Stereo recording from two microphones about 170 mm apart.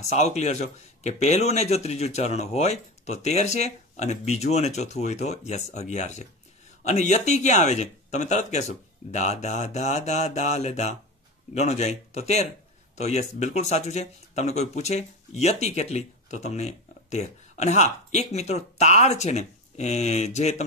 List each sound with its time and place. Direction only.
0.1 s speech: 40° left (ahead or behind)